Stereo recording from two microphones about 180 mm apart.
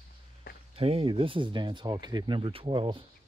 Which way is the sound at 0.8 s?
35° right (ahead or behind).